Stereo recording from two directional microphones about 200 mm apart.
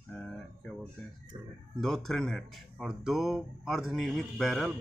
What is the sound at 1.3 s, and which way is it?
Speech, 20° right (ahead or behind).